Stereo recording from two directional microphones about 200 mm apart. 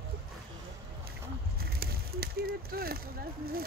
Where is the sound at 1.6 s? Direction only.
50° right (ahead or behind).